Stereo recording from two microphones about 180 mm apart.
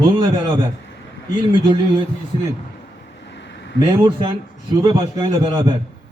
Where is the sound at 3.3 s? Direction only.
80° left.